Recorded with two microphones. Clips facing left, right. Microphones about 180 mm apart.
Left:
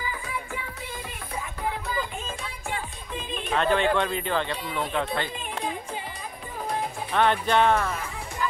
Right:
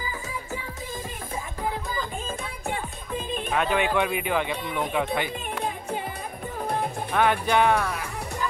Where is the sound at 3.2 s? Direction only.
50° right (ahead or behind).